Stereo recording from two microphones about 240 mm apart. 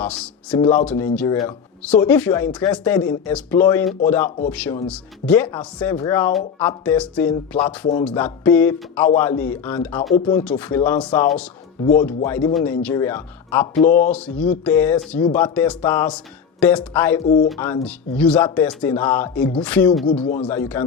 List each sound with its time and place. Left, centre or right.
0.0 s speech: centre
10.2 s speech: left
10.4 s speech: centre
13.7 s speech: left
14.1 s speech: centre
17.2 s speech: left
17.5 s speech: centre